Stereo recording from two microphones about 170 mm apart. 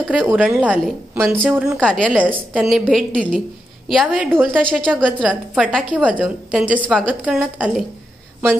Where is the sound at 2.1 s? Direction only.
10° right (ahead or behind).